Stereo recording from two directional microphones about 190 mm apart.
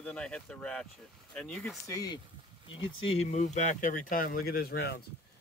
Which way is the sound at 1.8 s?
20° left (ahead or behind).